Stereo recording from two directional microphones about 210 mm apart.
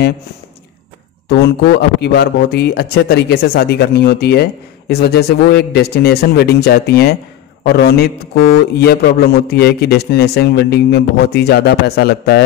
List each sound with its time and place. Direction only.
1.3 s speech: 50° left (ahead or behind)